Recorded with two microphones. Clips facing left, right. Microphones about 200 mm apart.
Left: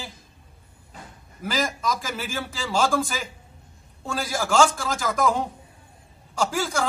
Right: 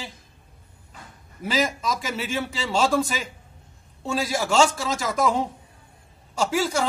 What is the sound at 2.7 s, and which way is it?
Speech, 25° right (ahead or behind).